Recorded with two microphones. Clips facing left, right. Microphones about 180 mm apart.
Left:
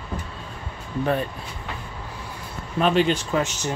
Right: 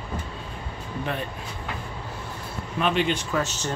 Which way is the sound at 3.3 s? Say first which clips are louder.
Left 3 dB; 15° left (ahead or behind).